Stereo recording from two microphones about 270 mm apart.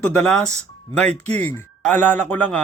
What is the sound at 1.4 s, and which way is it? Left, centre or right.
Speech, centre.